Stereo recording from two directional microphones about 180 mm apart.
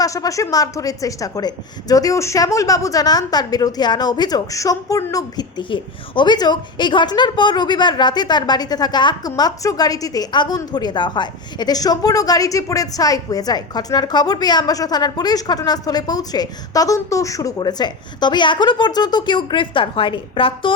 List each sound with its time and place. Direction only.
0.0 s a woman's voice: 20° left (ahead or behind)